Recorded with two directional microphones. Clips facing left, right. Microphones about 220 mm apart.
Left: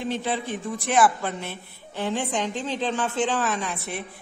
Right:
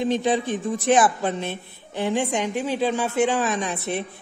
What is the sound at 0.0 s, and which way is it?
A man's voice, 15° right (ahead or behind).